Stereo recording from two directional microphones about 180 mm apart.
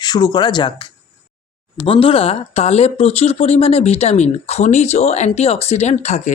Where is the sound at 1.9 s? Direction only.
30° left (ahead or behind).